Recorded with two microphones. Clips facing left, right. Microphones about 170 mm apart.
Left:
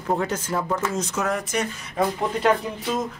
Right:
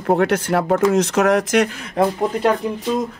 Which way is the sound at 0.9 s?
75° right (ahead or behind).